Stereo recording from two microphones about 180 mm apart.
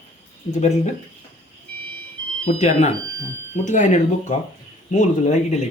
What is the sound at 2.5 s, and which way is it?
Speech, 35° left (ahead or behind).